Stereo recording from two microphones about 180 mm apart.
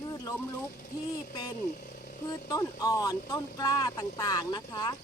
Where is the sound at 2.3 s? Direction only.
20° left (ahead or behind).